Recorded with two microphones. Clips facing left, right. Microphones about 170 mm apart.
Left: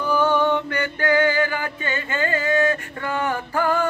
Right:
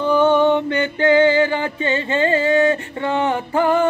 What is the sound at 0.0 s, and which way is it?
Music, 20° right (ahead or behind).